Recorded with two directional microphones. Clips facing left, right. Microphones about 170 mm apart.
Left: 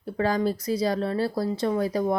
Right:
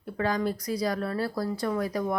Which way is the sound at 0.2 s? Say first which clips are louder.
Left 3 dB; 30° left (ahead or behind).